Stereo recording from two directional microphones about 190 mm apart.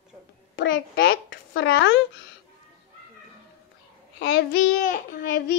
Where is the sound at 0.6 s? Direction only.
75° left (ahead or behind).